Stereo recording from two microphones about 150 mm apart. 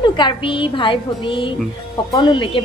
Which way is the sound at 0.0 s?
30° left (ahead or behind).